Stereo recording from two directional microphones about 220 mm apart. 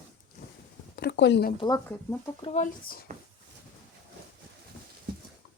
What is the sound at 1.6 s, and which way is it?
Speech, 15° left (ahead or behind).